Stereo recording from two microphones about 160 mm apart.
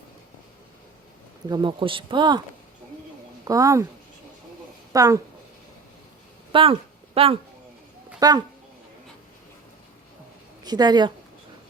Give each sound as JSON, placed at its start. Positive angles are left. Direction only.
{"t": 1.5, "sound": "speech", "side_deg": -25}
{"t": 3.4, "sound": "a woman's voice", "side_deg": -20}
{"t": 4.9, "sound": "speech", "side_deg": -20}
{"t": 6.5, "sound": "a sound", "side_deg": -35}
{"t": 8.2, "sound": "speech", "side_deg": -25}
{"t": 10.6, "sound": "speech", "side_deg": -25}